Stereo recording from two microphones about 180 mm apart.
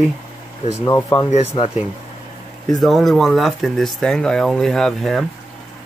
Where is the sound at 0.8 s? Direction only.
20° left (ahead or behind).